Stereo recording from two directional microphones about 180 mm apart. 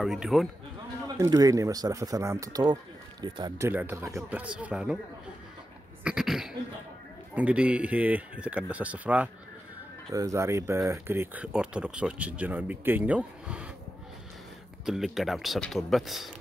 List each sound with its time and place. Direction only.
0.0 s speech: centre (ahead or behind)
1.0 s speech: 20° right (ahead or behind)
6.0 s speech: 5° right (ahead or behind)
14.9 s speech: centre (ahead or behind)